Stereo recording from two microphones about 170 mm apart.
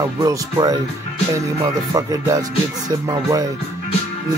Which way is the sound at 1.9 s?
20° right (ahead or behind).